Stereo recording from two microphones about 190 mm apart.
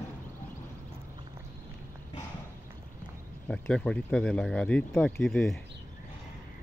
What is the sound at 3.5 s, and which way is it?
Speech, 5° left (ahead or behind).